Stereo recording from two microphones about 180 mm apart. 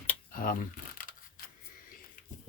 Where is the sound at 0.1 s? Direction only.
50° left (ahead or behind).